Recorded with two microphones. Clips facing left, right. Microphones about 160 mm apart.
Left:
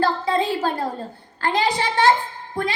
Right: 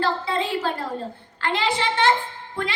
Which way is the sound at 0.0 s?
40° left (ahead or behind).